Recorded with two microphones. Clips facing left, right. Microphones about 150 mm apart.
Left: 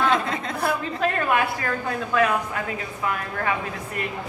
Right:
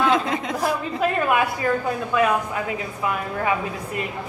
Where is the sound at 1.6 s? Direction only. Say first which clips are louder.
Right 6 dB; 10° right (ahead or behind).